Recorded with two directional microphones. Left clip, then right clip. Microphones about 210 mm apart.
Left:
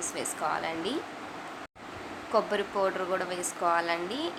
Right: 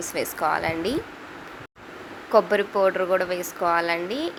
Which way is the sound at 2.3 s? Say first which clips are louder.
Right 8 dB; 20° right (ahead or behind).